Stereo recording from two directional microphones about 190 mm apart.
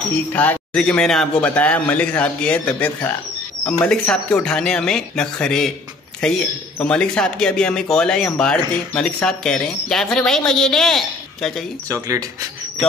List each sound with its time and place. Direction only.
0.1 s a man's voice: 10° left (ahead or behind)
11.9 s speech: 15° right (ahead or behind)